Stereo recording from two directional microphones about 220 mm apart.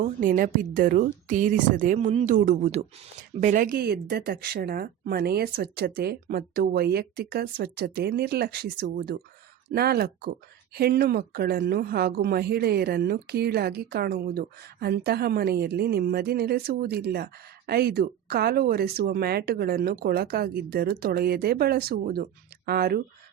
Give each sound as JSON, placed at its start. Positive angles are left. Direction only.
{"t": 0.0, "sound": "a woman's voice", "side_deg": -40}